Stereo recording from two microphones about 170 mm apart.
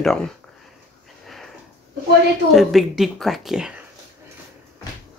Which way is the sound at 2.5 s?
Centre (ahead or behind).